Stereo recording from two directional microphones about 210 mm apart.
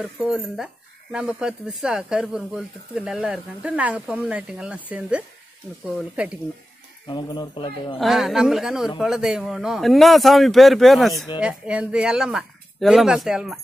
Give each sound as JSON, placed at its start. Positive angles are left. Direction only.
{"t": 0.0, "sound": "speech", "side_deg": 0}
{"t": 7.1, "sound": "speech", "side_deg": 20}
{"t": 8.0, "sound": "speech", "side_deg": 0}